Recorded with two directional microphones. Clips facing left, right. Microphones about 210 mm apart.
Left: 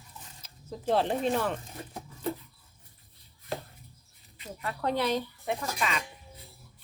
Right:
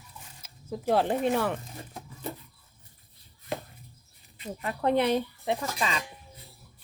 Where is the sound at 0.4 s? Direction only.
10° right (ahead or behind).